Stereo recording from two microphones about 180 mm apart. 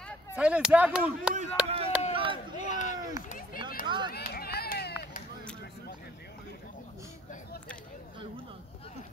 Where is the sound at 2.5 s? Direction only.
40° left (ahead or behind).